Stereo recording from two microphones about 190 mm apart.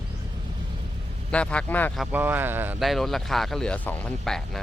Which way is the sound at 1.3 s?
5° left (ahead or behind).